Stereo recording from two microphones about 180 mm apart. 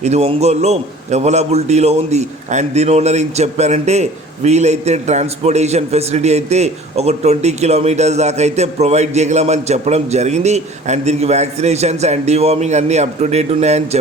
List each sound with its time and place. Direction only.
0.0 s a man's voice: 35° right (ahead or behind)